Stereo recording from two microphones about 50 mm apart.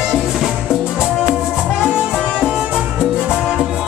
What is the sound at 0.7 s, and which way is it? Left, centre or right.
Music, centre.